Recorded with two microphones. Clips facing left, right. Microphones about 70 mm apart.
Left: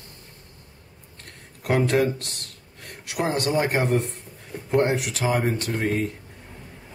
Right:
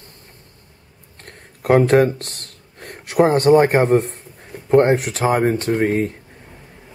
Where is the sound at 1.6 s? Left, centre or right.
Right.